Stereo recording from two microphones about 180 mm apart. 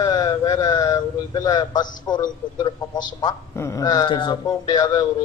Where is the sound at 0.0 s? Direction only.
20° left (ahead or behind).